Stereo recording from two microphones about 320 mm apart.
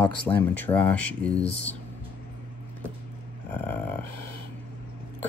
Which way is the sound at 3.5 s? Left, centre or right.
Centre.